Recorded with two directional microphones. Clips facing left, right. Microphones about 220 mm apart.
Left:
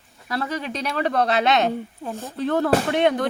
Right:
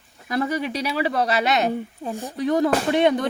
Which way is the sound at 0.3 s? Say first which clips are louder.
Right 3 dB; 15° right (ahead or behind).